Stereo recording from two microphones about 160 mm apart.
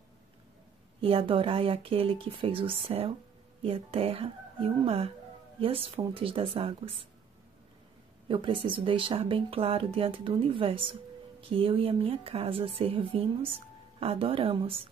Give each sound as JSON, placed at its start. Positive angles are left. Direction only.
{"t": 1.0, "sound": "speech", "side_deg": -35}
{"t": 8.3, "sound": "speech", "side_deg": -30}